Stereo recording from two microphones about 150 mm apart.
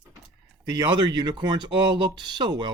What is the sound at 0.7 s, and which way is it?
Speech, 30° right (ahead or behind).